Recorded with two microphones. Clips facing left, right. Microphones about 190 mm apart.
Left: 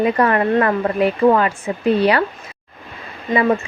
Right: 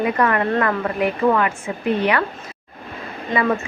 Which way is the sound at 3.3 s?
25° left (ahead or behind).